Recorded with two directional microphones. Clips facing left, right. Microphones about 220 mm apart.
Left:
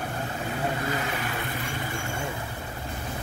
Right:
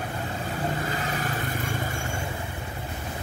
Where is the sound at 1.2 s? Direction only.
45° right (ahead or behind).